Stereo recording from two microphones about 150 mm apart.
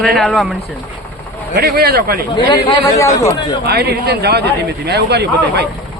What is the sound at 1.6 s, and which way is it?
Speech, 90° right.